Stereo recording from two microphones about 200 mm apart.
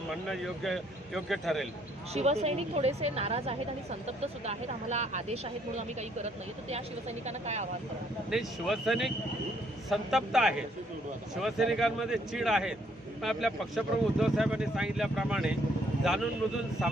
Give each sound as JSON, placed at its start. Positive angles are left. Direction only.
{"t": 0.1, "sound": "speech", "side_deg": 0}
{"t": 2.1, "sound": "speech", "side_deg": -35}
{"t": 8.3, "sound": "speech", "side_deg": 0}